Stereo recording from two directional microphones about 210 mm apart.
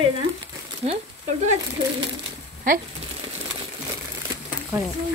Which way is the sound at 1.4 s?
35° right (ahead or behind).